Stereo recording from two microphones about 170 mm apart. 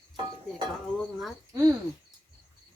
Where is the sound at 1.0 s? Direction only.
Centre (ahead or behind).